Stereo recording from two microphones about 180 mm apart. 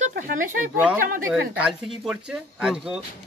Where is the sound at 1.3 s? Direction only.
5° right (ahead or behind).